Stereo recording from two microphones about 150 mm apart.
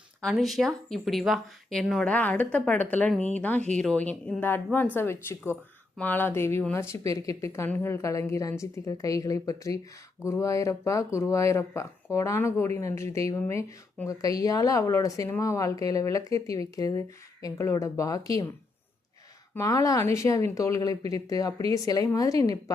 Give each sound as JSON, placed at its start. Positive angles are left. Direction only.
{"t": 0.2, "sound": "a woman's voice", "side_deg": 0}
{"t": 19.5, "sound": "a woman's voice", "side_deg": 20}